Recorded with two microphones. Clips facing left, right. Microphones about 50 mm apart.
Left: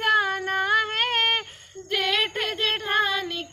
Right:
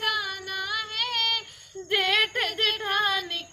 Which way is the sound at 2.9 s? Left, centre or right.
Left.